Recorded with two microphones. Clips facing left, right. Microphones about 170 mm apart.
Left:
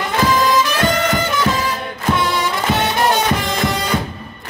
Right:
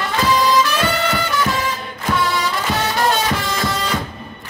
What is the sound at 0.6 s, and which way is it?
Music, 20° left (ahead or behind).